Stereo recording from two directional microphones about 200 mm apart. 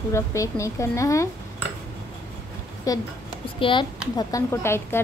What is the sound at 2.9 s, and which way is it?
Speech, 15° left (ahead or behind).